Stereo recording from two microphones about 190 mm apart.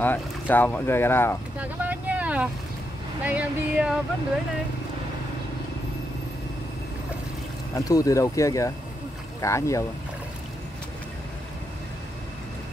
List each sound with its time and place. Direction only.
0.0 s speech: 10° left (ahead or behind)
1.6 s boat: 10° right (ahead or behind)
3.3 s speech: 5° right (ahead or behind)
7.7 s speech: 20° left (ahead or behind)